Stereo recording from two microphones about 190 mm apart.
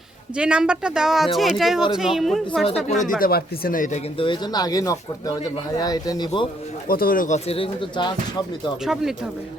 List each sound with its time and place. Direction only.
0.3 s speech: 5° right (ahead or behind)
2.8 s speech: 40° left (ahead or behind)
4.2 s speech: 25° left (ahead or behind)
6.8 s speech: 50° left (ahead or behind); by 8.1 s 25° left (ahead or behind)
8.8 s speech: centre (ahead or behind)